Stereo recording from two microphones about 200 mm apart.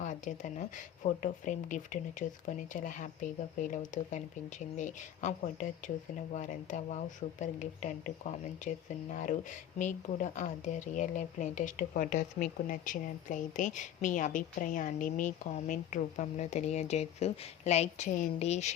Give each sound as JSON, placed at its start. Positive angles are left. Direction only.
{"t": 0.0, "sound": "speech", "side_deg": 40}